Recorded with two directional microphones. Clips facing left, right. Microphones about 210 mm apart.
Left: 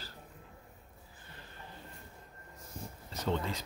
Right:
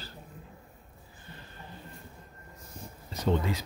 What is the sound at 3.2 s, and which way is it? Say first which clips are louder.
Speech: right 6 dB; 10° right (ahead or behind).